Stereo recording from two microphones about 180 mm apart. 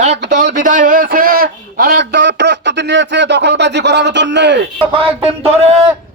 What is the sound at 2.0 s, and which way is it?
Speech, 75° right (ahead or behind).